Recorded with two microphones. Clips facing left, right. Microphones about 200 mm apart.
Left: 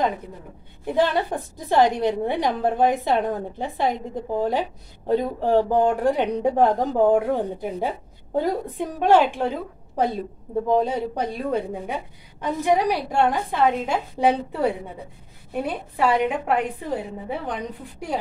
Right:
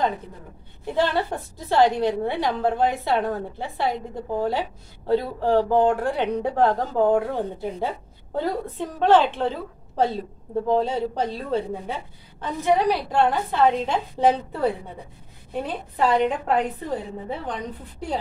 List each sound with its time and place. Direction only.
0.9 s a woman's voice: 15° left (ahead or behind)